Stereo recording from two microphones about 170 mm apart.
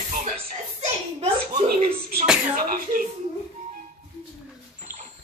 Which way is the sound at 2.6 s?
55° right (ahead or behind).